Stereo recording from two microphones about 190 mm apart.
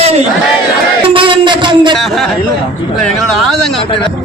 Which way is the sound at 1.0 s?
25° right (ahead or behind).